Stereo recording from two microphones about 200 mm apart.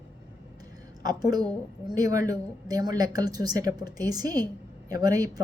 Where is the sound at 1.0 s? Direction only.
20° right (ahead or behind).